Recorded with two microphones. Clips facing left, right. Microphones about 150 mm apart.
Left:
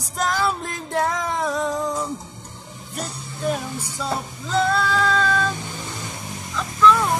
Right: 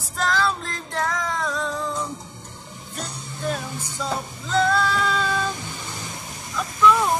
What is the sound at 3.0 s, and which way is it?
Music, 5° left (ahead or behind).